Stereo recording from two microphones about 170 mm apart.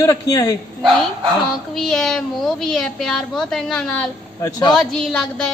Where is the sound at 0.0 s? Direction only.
20° left (ahead or behind).